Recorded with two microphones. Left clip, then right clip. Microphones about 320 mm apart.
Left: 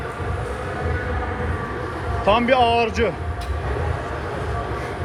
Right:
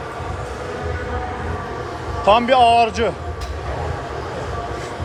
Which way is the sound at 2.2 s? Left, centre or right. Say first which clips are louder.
Right 4 dB; centre.